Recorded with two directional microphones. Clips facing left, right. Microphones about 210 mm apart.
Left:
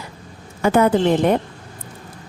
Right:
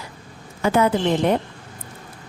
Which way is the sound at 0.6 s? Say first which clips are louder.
Left 3 dB; 55° left (ahead or behind).